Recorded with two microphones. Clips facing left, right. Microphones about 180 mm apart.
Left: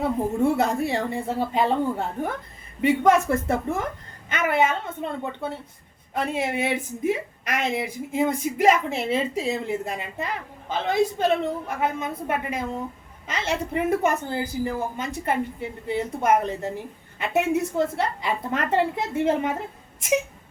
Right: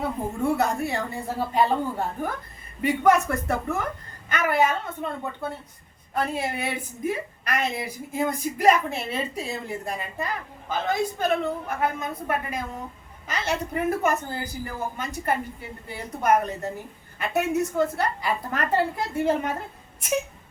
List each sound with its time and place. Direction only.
0.0 s a woman's voice: 25° left (ahead or behind)
2.8 s a woman's voice: 25° left (ahead or behind)